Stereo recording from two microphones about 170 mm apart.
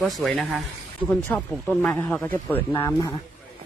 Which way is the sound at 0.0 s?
Centre (ahead or behind).